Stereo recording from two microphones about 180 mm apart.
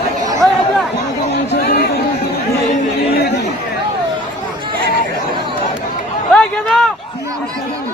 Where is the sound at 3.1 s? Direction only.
65° left (ahead or behind).